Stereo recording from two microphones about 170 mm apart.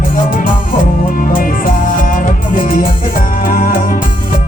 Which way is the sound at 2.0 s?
50° left (ahead or behind).